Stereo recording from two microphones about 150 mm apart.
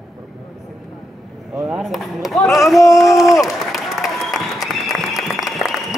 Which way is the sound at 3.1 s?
Centre (ahead or behind).